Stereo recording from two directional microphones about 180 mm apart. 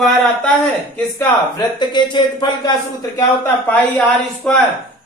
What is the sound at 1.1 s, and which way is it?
Speech, 20° left (ahead or behind).